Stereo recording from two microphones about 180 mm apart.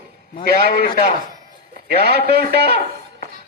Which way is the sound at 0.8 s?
30° left (ahead or behind).